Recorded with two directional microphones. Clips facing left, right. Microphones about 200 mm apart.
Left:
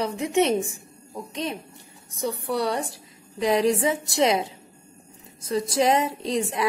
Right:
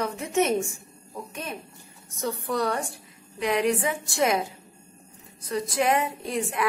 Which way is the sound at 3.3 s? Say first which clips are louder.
Left 3 dB; 30° left (ahead or behind).